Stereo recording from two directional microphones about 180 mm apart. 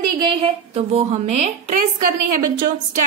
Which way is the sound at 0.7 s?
35° right (ahead or behind).